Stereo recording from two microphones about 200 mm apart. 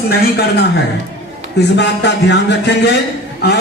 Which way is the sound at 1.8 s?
60° left (ahead or behind).